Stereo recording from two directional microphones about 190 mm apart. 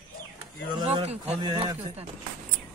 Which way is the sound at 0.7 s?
30° right (ahead or behind).